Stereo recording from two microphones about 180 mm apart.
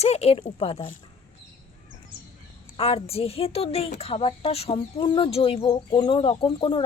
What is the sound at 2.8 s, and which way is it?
Speech, 35° left (ahead or behind).